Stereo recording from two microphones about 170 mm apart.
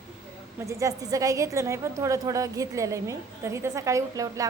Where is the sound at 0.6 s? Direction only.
20° right (ahead or behind).